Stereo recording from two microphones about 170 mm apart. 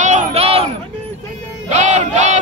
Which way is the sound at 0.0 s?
40° right (ahead or behind).